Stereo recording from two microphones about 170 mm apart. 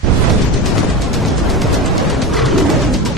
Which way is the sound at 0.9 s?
Centre (ahead or behind).